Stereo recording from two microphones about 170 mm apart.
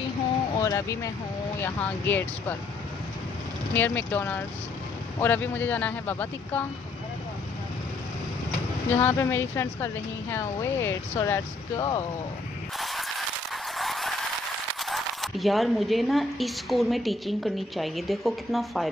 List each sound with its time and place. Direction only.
0.6 s speech: 20° left (ahead or behind)
3.7 s speech: 10° left (ahead or behind)
8.9 s speech: 15° left (ahead or behind)
12.7 s a sound: centre (ahead or behind)
14.9 s speech: centre (ahead or behind)